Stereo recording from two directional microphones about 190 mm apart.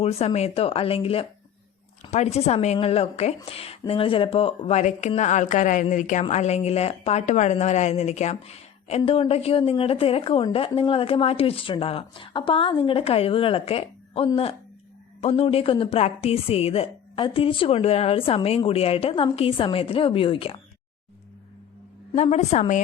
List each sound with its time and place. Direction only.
0.0 s speech: 35° left (ahead or behind)
22.1 s speech: 35° left (ahead or behind)